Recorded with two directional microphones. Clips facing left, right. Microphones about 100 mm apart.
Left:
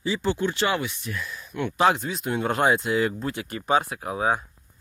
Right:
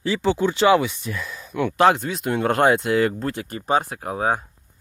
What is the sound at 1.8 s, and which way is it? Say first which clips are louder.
Speech: right 4 dB; 60° right (ahead or behind).